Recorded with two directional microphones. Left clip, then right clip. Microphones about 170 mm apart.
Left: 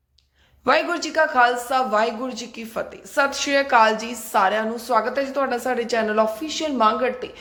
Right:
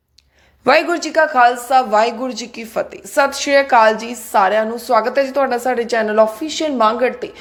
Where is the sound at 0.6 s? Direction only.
35° right (ahead or behind).